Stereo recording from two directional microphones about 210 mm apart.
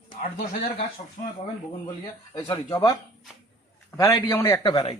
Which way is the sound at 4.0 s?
15° left (ahead or behind).